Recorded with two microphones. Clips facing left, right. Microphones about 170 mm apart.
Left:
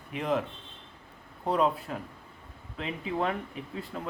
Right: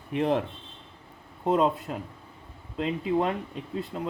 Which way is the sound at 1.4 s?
20° right (ahead or behind).